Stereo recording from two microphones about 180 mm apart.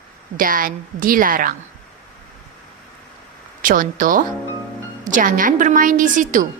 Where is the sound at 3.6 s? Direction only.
50° right (ahead or behind).